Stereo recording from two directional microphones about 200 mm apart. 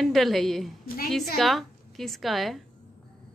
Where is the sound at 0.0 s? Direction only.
Centre (ahead or behind).